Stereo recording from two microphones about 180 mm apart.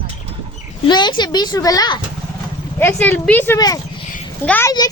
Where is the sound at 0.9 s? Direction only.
25° left (ahead or behind).